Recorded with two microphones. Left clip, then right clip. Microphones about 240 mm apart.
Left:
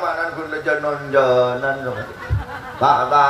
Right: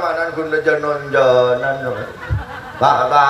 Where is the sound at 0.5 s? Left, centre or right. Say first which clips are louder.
Right 5 dB; right.